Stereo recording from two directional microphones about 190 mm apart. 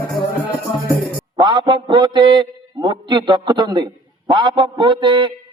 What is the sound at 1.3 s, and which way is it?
A man's voice, 25° right (ahead or behind).